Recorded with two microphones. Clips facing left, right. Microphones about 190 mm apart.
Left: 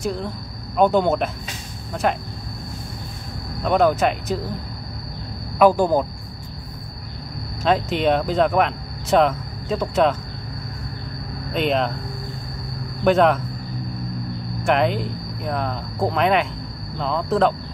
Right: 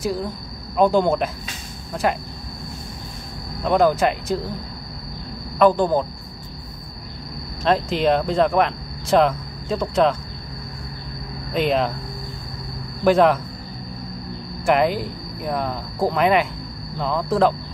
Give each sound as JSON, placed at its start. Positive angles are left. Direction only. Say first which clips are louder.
{"t": 0.7, "sound": "speech", "louder": "even", "side_deg": 0}
{"t": 3.6, "sound": "speech", "louder": "even", "side_deg": 0}
{"t": 5.6, "sound": "speech", "louder": "left 1 dB", "side_deg": 10}
{"t": 7.6, "sound": "speech", "louder": "even", "side_deg": 0}
{"t": 11.5, "sound": "speech", "louder": "right 1 dB", "side_deg": 0}
{"t": 13.0, "sound": "speech", "louder": "right 1 dB", "side_deg": 0}
{"t": 14.6, "sound": "speech", "louder": "right 1 dB", "side_deg": -5}